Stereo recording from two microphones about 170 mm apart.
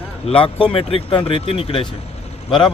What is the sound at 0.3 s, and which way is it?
Speech, 30° left (ahead or behind).